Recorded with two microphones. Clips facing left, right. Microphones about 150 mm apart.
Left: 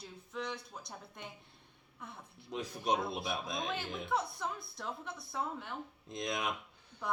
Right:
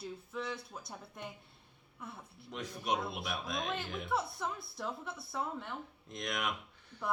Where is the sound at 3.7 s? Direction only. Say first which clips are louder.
Even; 5° right (ahead or behind).